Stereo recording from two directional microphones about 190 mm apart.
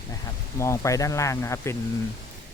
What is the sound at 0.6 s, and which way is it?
Speech, 15° left (ahead or behind).